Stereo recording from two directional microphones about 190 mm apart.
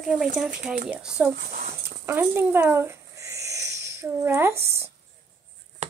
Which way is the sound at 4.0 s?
15° right (ahead or behind).